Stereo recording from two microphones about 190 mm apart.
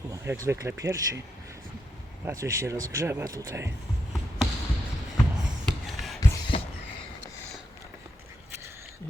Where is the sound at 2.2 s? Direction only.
15° right (ahead or behind).